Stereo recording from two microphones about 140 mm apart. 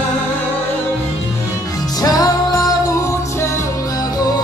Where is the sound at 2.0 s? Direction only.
25° left (ahead or behind).